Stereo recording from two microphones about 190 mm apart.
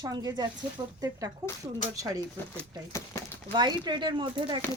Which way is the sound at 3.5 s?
25° right (ahead or behind).